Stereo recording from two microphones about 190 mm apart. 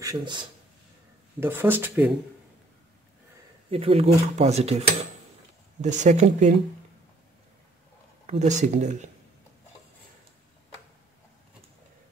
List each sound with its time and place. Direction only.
0.0 s speech: 20° right (ahead or behind)
1.4 s speech: 10° right (ahead or behind)
3.7 s speech: 30° right (ahead or behind)
8.3 s speech: 40° right (ahead or behind)